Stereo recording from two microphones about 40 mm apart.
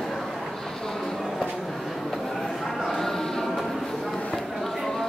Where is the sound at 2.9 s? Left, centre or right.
Centre.